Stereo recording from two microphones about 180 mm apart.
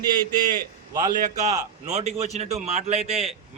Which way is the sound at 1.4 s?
40° right (ahead or behind).